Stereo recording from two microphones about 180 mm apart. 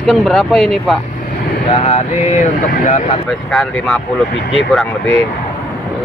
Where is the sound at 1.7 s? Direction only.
35° left (ahead or behind).